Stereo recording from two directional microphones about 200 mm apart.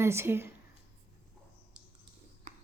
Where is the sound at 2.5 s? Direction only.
35° right (ahead or behind).